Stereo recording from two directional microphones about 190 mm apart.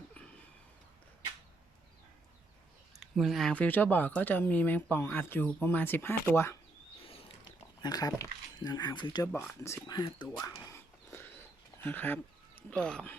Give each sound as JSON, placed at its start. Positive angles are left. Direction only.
{"t": 2.9, "sound": "speech", "side_deg": 0}
{"t": 7.0, "sound": "a sound", "side_deg": 30}
{"t": 7.8, "sound": "speech", "side_deg": 20}
{"t": 10.4, "sound": "dog", "side_deg": 15}
{"t": 11.8, "sound": "speech", "side_deg": 10}